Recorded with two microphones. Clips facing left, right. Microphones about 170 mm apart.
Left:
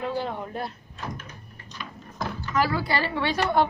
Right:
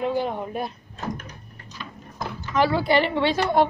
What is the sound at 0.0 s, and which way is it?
Speech, 15° right (ahead or behind).